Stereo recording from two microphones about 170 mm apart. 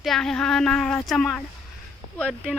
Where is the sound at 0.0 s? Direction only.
Centre (ahead or behind).